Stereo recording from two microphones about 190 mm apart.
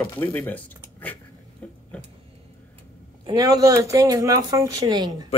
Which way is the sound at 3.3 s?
20° right (ahead or behind).